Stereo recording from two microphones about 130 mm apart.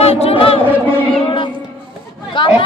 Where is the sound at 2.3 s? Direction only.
40° left (ahead or behind).